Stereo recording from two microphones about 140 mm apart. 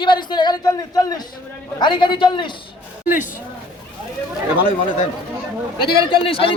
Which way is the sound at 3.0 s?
75° left (ahead or behind).